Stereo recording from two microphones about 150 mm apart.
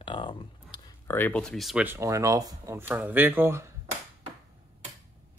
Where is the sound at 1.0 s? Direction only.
15° left (ahead or behind).